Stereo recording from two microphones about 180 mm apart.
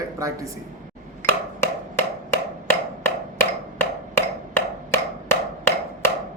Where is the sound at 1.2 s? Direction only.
15° left (ahead or behind).